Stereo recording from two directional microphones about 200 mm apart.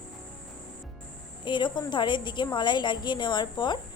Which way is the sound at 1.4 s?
25° left (ahead or behind).